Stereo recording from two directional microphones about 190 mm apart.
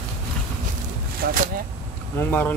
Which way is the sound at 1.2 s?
45° right (ahead or behind).